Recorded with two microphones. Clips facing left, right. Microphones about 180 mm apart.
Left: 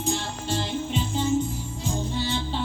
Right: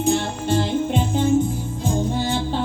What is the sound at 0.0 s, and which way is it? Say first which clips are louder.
Music: right 8 dB; 60° right (ahead or behind).